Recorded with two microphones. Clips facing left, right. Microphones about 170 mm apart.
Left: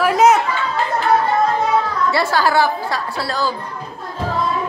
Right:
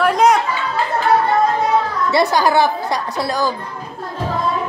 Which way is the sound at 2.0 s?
20° right (ahead or behind).